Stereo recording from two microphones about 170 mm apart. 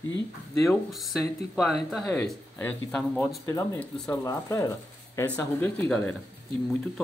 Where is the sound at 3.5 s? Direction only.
20° left (ahead or behind).